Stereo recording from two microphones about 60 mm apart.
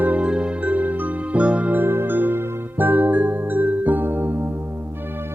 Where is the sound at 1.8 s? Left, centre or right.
Right.